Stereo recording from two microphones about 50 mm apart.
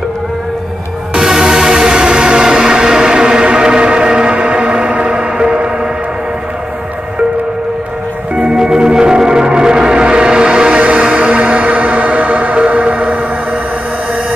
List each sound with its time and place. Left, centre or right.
1.1 s music: centre
8.5 s music: centre